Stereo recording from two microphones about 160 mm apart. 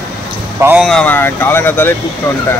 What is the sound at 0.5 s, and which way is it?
Speech, 10° right (ahead or behind).